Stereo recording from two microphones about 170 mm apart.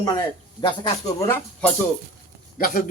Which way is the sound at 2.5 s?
55° left (ahead or behind).